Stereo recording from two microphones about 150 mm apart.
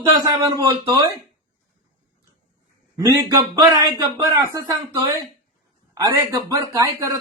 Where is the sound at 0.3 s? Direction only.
25° right (ahead or behind).